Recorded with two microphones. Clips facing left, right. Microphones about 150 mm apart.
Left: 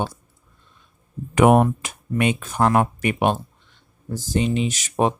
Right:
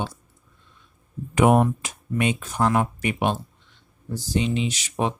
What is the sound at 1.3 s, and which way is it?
Speech, 60° left (ahead or behind).